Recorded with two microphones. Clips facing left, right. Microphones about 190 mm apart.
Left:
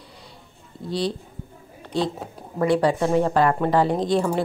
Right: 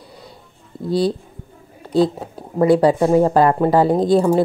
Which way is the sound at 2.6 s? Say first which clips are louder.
Right 6 dB; 35° right (ahead or behind).